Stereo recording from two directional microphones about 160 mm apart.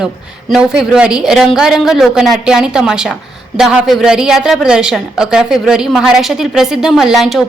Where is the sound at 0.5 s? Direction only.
5° right (ahead or behind).